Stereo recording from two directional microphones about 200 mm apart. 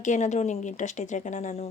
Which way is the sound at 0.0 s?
35° left (ahead or behind).